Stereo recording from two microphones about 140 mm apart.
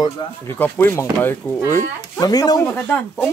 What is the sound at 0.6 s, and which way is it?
Speech, 15° left (ahead or behind).